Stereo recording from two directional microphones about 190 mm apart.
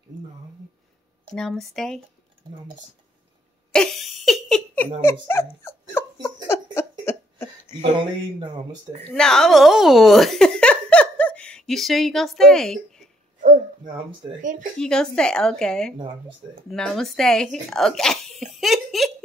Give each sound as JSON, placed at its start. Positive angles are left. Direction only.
{"t": 1.3, "sound": "speech", "side_deg": 0}
{"t": 3.7, "sound": "giggle", "side_deg": 0}
{"t": 5.6, "sound": "dog", "side_deg": 15}
{"t": 6.2, "sound": "a sound", "side_deg": 15}
{"t": 7.8, "sound": "speech", "side_deg": -25}
{"t": 9.1, "sound": "speech", "side_deg": 5}
{"t": 14.4, "sound": "speech", "side_deg": -40}
{"t": 14.8, "sound": "speech", "side_deg": 5}